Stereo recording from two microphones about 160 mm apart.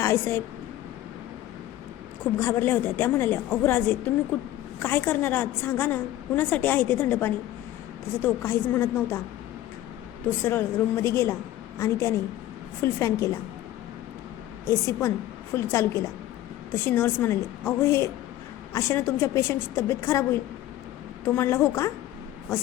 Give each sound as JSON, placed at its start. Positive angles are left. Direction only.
{"t": 0.0, "sound": "a woman's voice", "side_deg": 15}
{"t": 2.2, "sound": "a woman's voice", "side_deg": 15}
{"t": 10.4, "sound": "a woman's voice", "side_deg": 15}
{"t": 14.7, "sound": "a woman's voice", "side_deg": 15}